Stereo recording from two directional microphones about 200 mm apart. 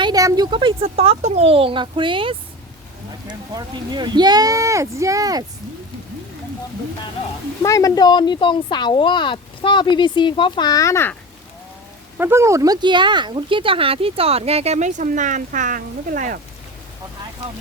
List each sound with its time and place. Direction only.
0.0 s speech: 20° right (ahead or behind)
7.6 s speech: 15° left (ahead or behind)
12.1 s speech: 10° right (ahead or behind); by 16.4 s 40° right (ahead or behind)